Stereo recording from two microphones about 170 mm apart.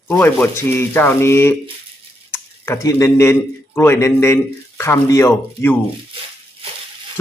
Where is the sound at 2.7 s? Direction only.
15° left (ahead or behind).